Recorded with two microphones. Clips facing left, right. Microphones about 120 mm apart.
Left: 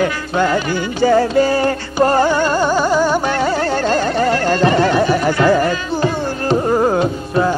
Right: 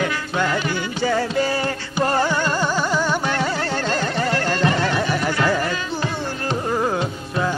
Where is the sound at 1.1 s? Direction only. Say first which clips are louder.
Left 8 dB; 40° left (ahead or behind).